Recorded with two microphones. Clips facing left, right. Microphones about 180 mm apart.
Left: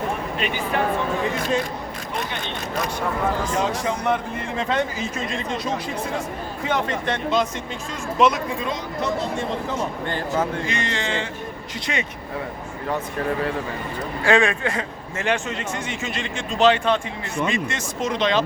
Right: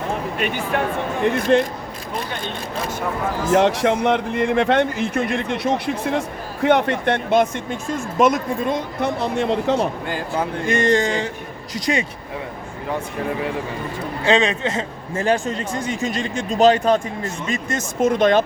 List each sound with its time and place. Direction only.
1.2 s speech: 65° right (ahead or behind)
3.5 s speech: 70° right (ahead or behind)
10.7 s a man's voice: 45° right (ahead or behind)
14.3 s a man's voice: 20° right (ahead or behind); by 18.4 s 50° right (ahead or behind)